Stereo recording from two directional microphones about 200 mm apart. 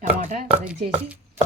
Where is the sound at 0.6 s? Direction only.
5° right (ahead or behind).